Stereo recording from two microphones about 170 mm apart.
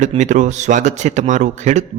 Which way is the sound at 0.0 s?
45° right (ahead or behind).